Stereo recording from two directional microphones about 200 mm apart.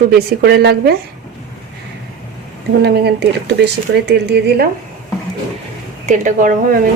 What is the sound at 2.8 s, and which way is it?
Speech, 55° right (ahead or behind).